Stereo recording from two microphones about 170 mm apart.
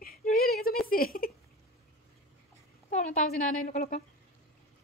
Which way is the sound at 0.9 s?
60° left (ahead or behind).